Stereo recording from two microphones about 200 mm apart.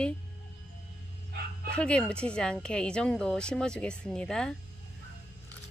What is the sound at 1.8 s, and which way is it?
A woman's voice, 5° left (ahead or behind).